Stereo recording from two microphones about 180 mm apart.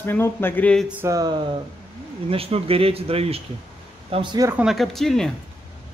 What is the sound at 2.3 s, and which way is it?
Speech, 30° right (ahead or behind).